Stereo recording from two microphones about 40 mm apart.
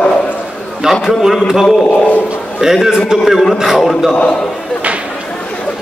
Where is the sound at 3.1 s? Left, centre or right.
Centre.